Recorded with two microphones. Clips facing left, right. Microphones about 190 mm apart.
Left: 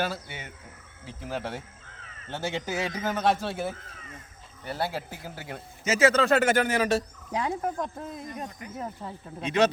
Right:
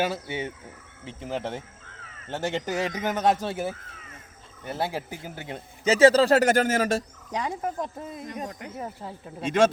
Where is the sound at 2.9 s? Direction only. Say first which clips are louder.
Right 1 dB; 20° right (ahead or behind); by 7.0 s 45° right (ahead or behind).